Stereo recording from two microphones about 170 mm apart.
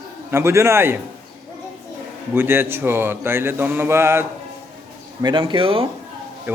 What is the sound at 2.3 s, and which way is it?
Speech, 15° right (ahead or behind).